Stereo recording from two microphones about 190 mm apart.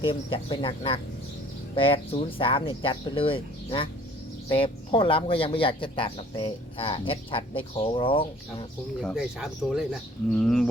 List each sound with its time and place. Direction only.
0.0 s speech: 30° left (ahead or behind)
9.0 s speech: centre (ahead or behind)